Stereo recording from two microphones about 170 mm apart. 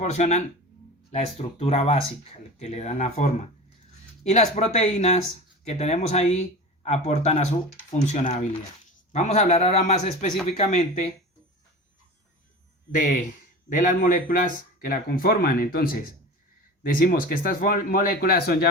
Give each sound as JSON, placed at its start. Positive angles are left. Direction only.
{"t": 0.0, "sound": "a man's voice", "side_deg": 45}
{"t": 13.7, "sound": "speech", "side_deg": 50}